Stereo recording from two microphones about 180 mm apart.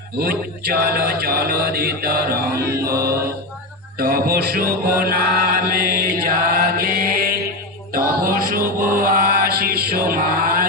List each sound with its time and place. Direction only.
0.2 s mantra: 60° right (ahead or behind)
2.8 s music: 15° right (ahead or behind)
3.9 s mantra: 55° right (ahead or behind)
7.9 s music: 55° right (ahead or behind)
8.6 s chant: 15° right (ahead or behind)
9.1 s chant: 55° right (ahead or behind)